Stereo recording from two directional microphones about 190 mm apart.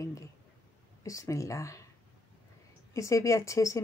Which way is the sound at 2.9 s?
15° left (ahead or behind).